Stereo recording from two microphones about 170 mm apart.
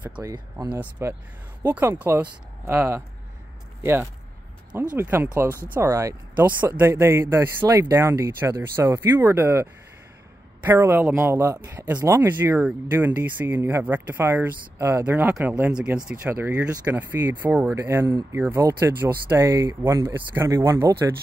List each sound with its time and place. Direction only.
0.1 s speech: 20° right (ahead or behind)
0.7 s speech: 10° right (ahead or behind)